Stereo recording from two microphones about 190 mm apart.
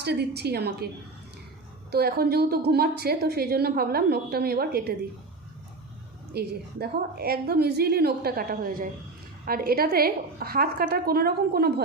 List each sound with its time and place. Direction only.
0.0 s a woman's voice: 60° right (ahead or behind)
1.9 s a woman's voice: 55° right (ahead or behind)
6.3 s a woman's voice: 55° right (ahead or behind)